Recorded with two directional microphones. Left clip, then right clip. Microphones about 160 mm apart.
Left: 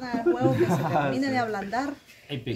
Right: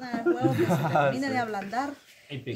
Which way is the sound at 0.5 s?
90° right.